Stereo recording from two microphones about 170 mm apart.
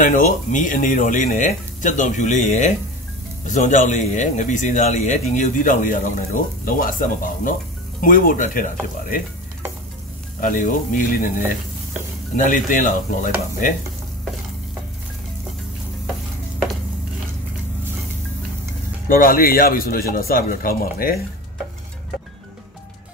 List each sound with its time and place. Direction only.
0.0 s a man's voice: 50° left (ahead or behind)
10.4 s speech: 50° left (ahead or behind)
19.0 s a man's voice: 55° left (ahead or behind)